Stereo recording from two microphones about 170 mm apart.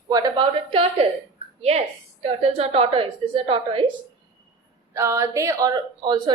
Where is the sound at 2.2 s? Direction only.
35° right (ahead or behind).